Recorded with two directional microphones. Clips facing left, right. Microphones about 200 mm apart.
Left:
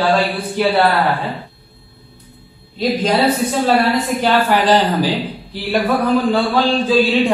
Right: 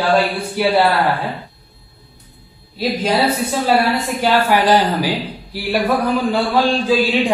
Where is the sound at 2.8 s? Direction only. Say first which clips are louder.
Left 2 dB; 10° right (ahead or behind).